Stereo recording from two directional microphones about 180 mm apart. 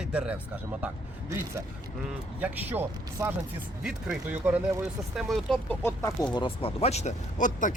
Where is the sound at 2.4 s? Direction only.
10° right (ahead or behind).